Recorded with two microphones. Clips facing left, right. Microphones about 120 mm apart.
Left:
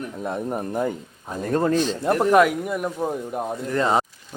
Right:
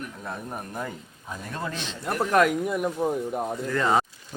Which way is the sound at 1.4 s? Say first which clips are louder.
Left 14 dB; 45° left (ahead or behind).